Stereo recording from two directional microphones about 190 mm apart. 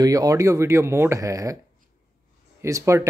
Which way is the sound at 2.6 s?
15° right (ahead or behind).